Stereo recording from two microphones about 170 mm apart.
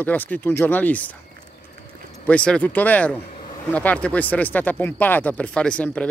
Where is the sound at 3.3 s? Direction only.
55° left (ahead or behind).